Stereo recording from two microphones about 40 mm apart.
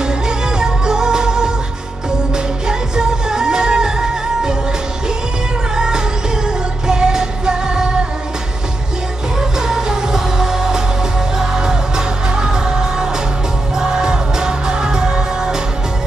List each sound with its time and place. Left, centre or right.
0.6 s music: centre
5.8 s music: centre
9.4 s music: centre